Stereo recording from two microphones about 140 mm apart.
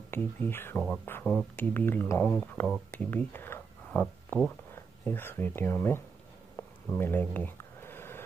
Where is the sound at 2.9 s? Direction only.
15° left (ahead or behind).